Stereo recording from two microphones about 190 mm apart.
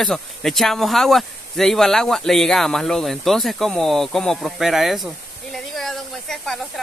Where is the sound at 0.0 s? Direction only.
Centre (ahead or behind).